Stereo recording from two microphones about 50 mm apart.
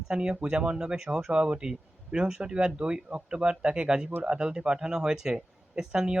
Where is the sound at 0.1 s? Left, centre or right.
Centre.